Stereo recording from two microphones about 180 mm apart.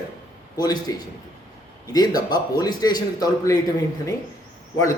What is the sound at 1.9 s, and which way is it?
A man's voice, 20° left (ahead or behind).